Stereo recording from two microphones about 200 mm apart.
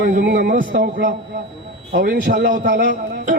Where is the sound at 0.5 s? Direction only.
40° right (ahead or behind).